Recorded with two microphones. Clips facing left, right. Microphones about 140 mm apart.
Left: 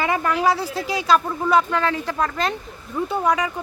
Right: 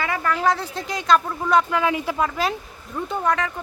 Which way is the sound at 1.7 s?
10° right (ahead or behind).